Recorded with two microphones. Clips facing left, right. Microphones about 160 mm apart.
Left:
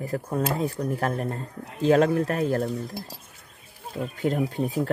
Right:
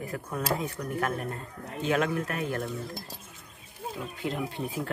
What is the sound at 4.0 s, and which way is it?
Speech, 45° left (ahead or behind).